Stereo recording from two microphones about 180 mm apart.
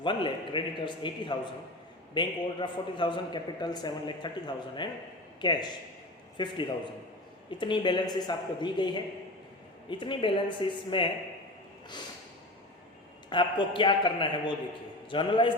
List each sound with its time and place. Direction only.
0.0 s a man's voice: 25° left (ahead or behind)
13.3 s a man's voice: 25° left (ahead or behind)